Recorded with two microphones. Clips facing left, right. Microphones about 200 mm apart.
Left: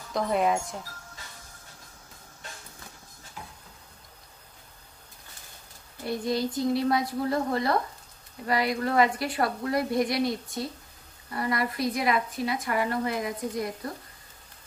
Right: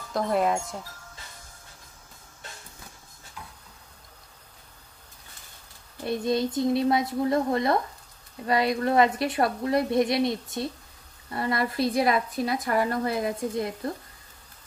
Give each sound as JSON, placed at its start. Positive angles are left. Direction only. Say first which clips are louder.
{"t": 0.1, "sound": "speech", "louder": "right 1 dB", "side_deg": 0}
{"t": 6.0, "sound": "a woman's voice", "louder": "right 2 dB", "side_deg": -20}